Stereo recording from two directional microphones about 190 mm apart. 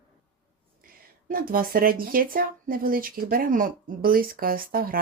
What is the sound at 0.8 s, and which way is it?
Speech, 50° right (ahead or behind).